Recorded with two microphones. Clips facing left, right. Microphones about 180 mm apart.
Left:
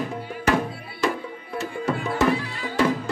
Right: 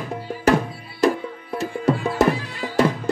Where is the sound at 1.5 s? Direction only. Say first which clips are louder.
Right 5 dB; 35° right (ahead or behind).